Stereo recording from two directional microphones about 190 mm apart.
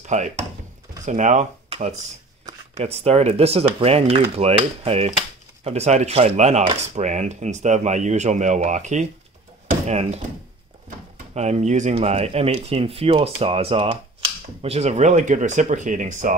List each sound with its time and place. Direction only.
0.0 s speech: 40° right (ahead or behind)
11.3 s speech: 35° right (ahead or behind)